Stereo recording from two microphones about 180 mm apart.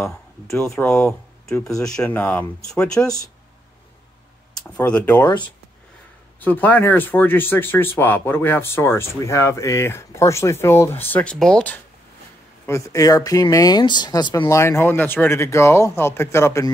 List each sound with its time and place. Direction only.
0.5 s speech: 5° left (ahead or behind)
4.8 s speech: 10° left (ahead or behind)
6.4 s speech: 10° left (ahead or behind)